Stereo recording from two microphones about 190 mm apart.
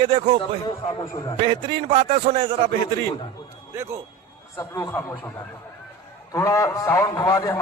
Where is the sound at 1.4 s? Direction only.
25° right (ahead or behind).